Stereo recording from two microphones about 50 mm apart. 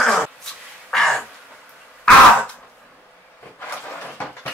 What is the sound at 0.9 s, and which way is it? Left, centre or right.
Crow, centre.